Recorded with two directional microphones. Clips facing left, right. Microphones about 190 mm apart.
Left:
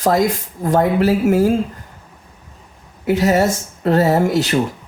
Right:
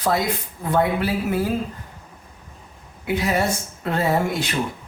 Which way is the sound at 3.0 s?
40° left (ahead or behind).